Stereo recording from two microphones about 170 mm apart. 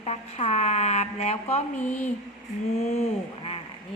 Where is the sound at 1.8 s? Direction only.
10° left (ahead or behind).